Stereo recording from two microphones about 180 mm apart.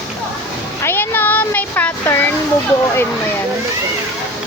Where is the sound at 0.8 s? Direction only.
10° left (ahead or behind).